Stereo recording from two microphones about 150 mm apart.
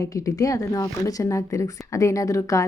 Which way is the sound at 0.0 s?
25° left (ahead or behind).